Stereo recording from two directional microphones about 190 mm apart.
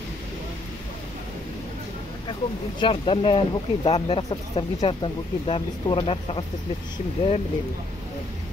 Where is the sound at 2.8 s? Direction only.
25° left (ahead or behind).